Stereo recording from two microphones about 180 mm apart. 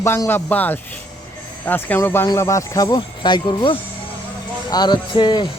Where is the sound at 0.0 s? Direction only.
15° left (ahead or behind).